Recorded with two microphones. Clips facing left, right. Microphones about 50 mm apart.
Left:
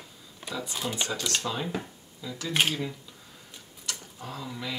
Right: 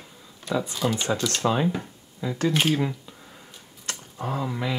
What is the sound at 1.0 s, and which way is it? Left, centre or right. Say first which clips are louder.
Speech: right 7 dB; right.